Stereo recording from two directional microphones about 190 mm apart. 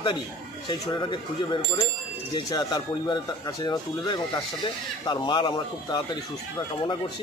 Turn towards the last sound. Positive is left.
turn(degrees=25)  # may be behind; listen again after turning